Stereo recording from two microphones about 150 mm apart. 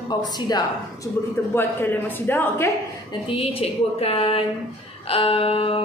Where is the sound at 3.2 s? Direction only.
40° left (ahead or behind).